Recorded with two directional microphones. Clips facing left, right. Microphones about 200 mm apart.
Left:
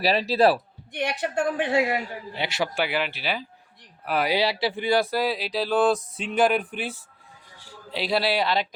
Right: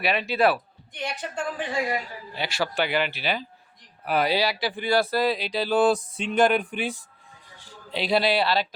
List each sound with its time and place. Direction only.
0.0 s a man's voice: 35° left (ahead or behind)
0.9 s a woman's voice: 65° left (ahead or behind)
2.3 s a man's voice: 20° left (ahead or behind)
2.7 s speech: 5° left (ahead or behind)
4.3 s a man's voice: 25° left (ahead or behind)